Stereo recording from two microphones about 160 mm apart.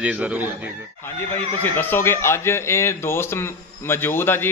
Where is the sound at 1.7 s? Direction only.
15° left (ahead or behind).